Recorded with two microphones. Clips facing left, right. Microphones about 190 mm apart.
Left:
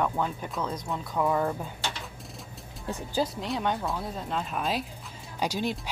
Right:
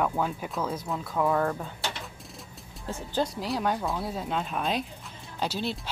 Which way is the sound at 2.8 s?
15° left (ahead or behind).